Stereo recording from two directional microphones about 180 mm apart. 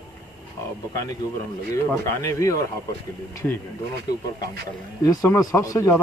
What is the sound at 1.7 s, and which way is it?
Speech, 15° left (ahead or behind).